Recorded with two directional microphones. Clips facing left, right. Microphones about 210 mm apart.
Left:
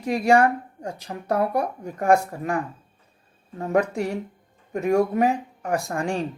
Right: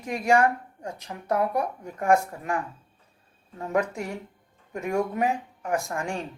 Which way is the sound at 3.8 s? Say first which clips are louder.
Left 5 dB; 35° left (ahead or behind).